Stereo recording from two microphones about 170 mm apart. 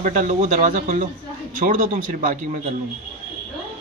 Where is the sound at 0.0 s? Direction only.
50° right (ahead or behind).